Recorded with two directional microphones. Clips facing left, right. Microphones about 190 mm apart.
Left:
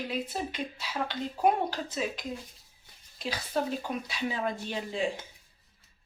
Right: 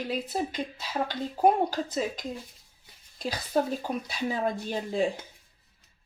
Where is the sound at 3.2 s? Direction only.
40° right (ahead or behind).